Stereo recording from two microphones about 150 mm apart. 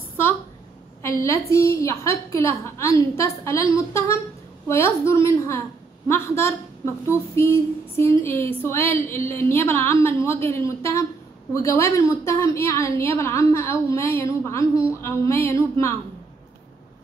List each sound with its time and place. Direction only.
1.2 s a woman's voice: 20° left (ahead or behind)
4.6 s a sound: 20° left (ahead or behind)
11.5 s a woman's voice: 20° left (ahead or behind)